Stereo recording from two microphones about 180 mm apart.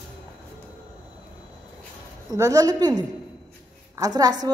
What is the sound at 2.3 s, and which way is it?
A woman's voice, 20° right (ahead or behind).